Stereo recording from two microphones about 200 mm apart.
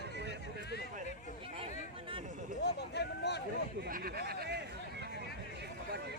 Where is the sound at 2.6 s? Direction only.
55° left (ahead or behind).